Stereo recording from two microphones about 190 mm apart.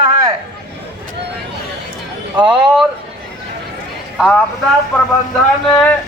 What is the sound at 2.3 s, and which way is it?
Speech, 5° right (ahead or behind).